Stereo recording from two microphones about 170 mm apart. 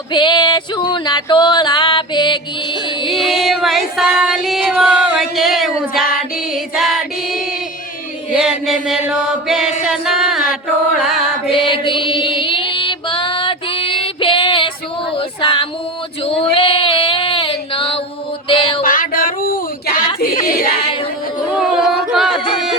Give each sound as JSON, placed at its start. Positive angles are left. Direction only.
{"t": 0.1, "sound": "a sound", "side_deg": 25}
{"t": 3.1, "sound": "music", "side_deg": 0}
{"t": 6.5, "sound": "female singing", "side_deg": 0}
{"t": 8.3, "sound": "chant", "side_deg": -5}
{"t": 9.8, "sound": "music", "side_deg": -5}
{"t": 10.5, "sound": "mantra", "side_deg": 0}
{"t": 11.5, "sound": "female singing", "side_deg": 30}
{"t": 15.2, "sound": "child singing", "side_deg": 30}
{"t": 16.2, "sound": "female singing", "side_deg": 35}
{"t": 18.4, "sound": "a sound", "side_deg": 30}
{"t": 18.8, "sound": "a sound", "side_deg": 55}
{"t": 21.8, "sound": "a sound", "side_deg": 0}